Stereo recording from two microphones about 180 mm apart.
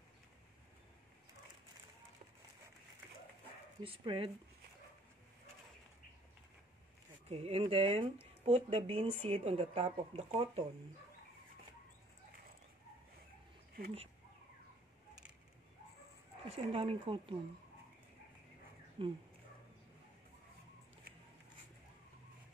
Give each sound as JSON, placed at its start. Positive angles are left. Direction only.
{"t": 3.8, "sound": "speech", "side_deg": -30}
{"t": 7.2, "sound": "speech", "side_deg": -35}
{"t": 16.5, "sound": "speech", "side_deg": -30}
{"t": 19.0, "sound": "speech", "side_deg": -30}